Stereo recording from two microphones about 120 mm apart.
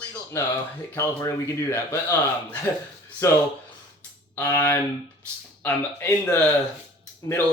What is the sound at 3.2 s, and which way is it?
Speech, 25° left (ahead or behind).